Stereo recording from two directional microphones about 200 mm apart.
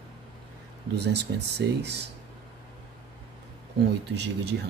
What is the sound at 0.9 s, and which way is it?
Speech, 60° right (ahead or behind).